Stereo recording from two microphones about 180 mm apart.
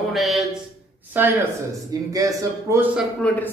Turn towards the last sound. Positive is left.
turn(degrees=5)  # may be behind; listen again after turning